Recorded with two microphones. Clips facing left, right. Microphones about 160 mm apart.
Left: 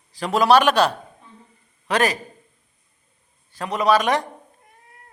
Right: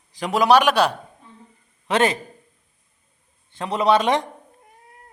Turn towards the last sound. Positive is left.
turn(degrees=-25)  # may be behind; listen again after turning